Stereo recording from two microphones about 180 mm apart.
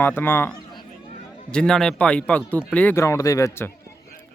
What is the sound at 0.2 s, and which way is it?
Speech, 10° left (ahead or behind).